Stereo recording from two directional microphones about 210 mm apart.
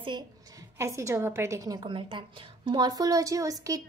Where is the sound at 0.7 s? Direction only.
15° right (ahead or behind).